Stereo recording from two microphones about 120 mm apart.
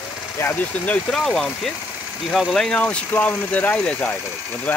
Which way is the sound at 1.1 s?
5° left (ahead or behind).